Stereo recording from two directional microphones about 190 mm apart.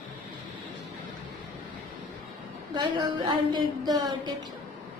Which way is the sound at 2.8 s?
25° right (ahead or behind).